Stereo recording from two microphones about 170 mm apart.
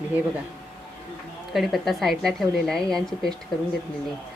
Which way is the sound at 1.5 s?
Centre (ahead or behind).